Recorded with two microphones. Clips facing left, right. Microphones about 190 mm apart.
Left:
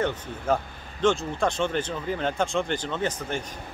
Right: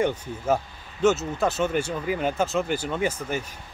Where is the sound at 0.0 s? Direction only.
10° right (ahead or behind).